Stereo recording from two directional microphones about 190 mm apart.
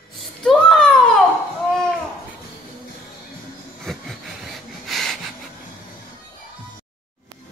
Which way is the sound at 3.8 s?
Centre (ahead or behind).